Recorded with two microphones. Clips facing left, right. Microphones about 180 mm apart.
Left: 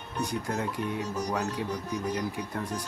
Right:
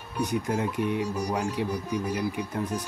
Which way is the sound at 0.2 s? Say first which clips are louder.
Right 4 dB; 15° right (ahead or behind).